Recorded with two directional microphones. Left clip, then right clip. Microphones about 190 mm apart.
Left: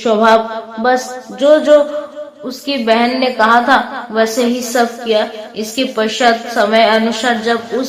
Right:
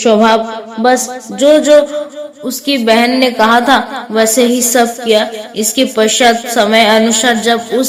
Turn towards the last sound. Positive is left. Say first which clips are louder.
# right 4 dB
turn(degrees=-45)  # may be behind; listen again after turning